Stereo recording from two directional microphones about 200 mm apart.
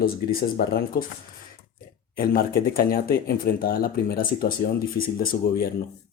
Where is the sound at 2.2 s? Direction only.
45° left (ahead or behind).